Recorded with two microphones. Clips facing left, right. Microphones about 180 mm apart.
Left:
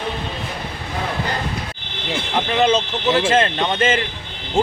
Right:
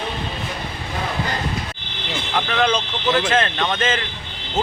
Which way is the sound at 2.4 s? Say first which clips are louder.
Left 3 dB; 25° left (ahead or behind).